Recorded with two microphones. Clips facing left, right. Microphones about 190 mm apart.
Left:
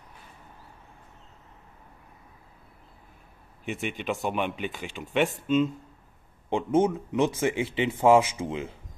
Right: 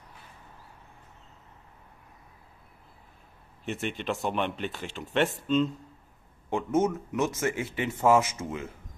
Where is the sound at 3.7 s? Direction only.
5° left (ahead or behind).